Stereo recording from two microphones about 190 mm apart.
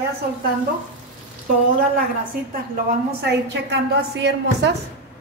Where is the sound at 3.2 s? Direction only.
60° right (ahead or behind).